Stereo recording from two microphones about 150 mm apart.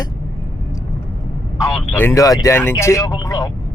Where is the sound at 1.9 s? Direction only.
20° left (ahead or behind).